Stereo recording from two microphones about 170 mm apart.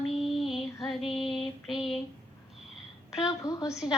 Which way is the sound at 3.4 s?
20° left (ahead or behind).